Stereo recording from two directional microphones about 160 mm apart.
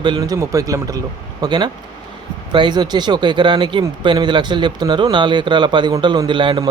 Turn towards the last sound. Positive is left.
turn(degrees=-25)  # may be behind; listen again after turning